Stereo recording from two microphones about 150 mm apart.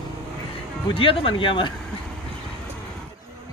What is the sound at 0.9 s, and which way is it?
Speech, 35° left (ahead or behind).